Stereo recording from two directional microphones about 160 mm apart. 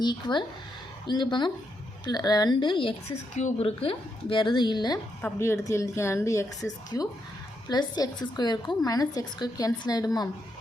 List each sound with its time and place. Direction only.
0.0 s a woman's voice: 25° left (ahead or behind)
3.3 s a woman's voice: 45° left (ahead or behind); by 4.9 s 25° left (ahead or behind)
5.2 s a woman's voice: 15° left (ahead or behind)